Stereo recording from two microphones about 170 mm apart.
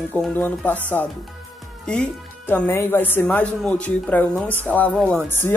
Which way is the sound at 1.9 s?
10° left (ahead or behind).